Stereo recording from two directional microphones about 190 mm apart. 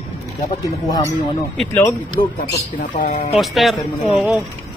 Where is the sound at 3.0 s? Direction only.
30° left (ahead or behind).